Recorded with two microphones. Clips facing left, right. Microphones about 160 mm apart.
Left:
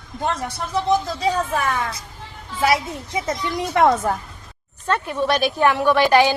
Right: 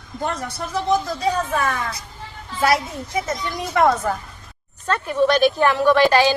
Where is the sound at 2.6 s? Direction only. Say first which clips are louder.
Even; 15° left (ahead or behind).